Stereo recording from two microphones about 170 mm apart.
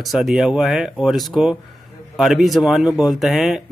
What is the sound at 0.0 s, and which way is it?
Speech, centre (ahead or behind).